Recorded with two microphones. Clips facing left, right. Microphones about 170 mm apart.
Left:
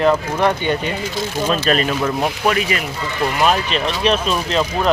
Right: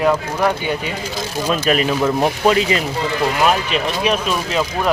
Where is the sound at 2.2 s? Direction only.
25° right (ahead or behind).